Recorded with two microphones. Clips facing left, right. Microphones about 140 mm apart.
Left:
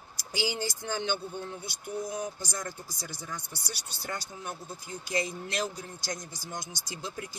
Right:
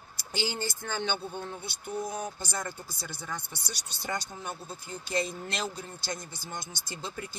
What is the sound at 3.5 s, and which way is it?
Speech, 10° left (ahead or behind).